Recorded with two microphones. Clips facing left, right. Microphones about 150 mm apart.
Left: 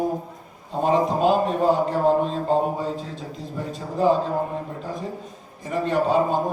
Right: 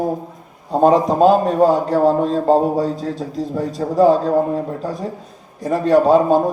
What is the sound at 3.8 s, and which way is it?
Speech, 70° right (ahead or behind).